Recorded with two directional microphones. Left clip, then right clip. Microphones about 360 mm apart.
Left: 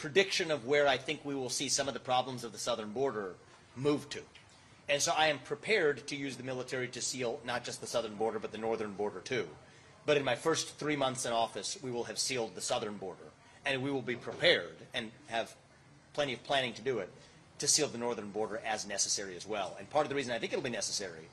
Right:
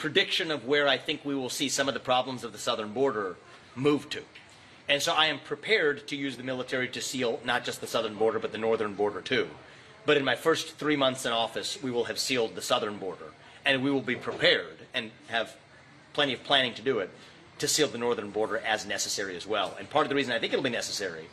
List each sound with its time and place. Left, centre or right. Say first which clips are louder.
0.0 s speech: right 4 dB; left